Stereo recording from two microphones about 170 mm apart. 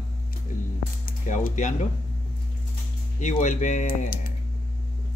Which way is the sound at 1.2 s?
45° left (ahead or behind).